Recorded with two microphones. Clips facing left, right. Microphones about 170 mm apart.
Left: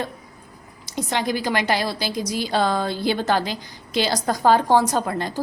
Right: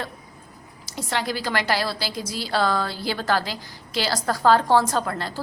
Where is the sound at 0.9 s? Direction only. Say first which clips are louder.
Left 3 dB; 20° left (ahead or behind).